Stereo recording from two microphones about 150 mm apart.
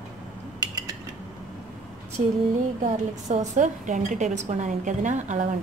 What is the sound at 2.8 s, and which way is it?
Speech, 50° right (ahead or behind).